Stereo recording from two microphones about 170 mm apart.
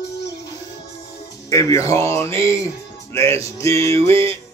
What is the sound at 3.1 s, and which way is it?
Music, 15° left (ahead or behind).